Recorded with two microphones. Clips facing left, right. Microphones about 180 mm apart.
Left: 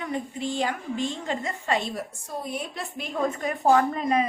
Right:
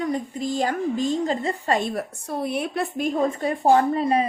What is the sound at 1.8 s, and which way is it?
A woman's voice, 55° right (ahead or behind).